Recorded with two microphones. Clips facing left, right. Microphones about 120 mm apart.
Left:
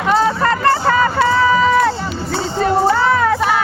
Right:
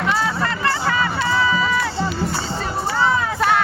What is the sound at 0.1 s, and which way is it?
Music, 45° left (ahead or behind).